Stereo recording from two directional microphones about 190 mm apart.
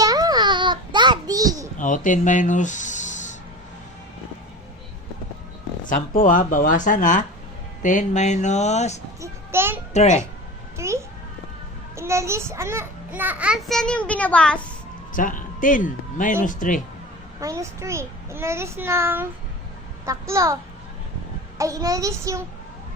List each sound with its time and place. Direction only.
0.0 s music: 20° right (ahead or behind)
1.8 s speech: 45° left (ahead or behind)
5.9 s speech: 45° left (ahead or behind)
9.2 s a child's voice: 15° right (ahead or behind)
9.9 s speech: 35° left (ahead or behind)
10.8 s a child's voice: 15° right (ahead or behind); by 14.6 s 5° left (ahead or behind)
15.1 s speech: 45° left (ahead or behind)
17.4 s a child's voice: 15° right (ahead or behind)
21.6 s a child's voice: 15° right (ahead or behind)